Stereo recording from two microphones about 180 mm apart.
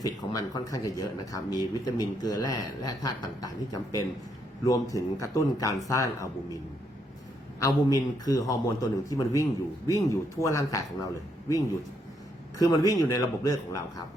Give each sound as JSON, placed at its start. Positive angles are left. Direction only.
{"t": 0.0, "sound": "speech", "side_deg": 20}
{"t": 7.6, "sound": "speech", "side_deg": 20}
{"t": 12.5, "sound": "speech", "side_deg": 20}